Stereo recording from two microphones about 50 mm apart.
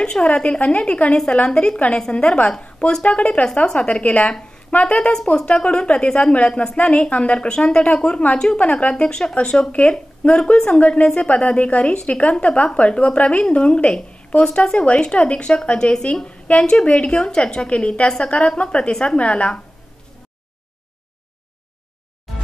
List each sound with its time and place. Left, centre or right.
0.0 s a woman's voice: centre
4.2 s a woman's voice: centre